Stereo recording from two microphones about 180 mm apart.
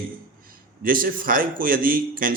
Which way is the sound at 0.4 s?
50° right (ahead or behind).